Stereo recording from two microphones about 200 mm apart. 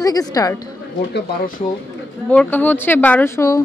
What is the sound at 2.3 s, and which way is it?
A woman's voice, 10° left (ahead or behind).